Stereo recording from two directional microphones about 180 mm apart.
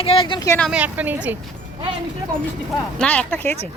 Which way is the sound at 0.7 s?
10° right (ahead or behind).